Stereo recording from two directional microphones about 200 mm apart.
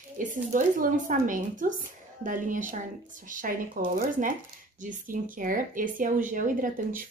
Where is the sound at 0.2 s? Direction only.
40° right (ahead or behind).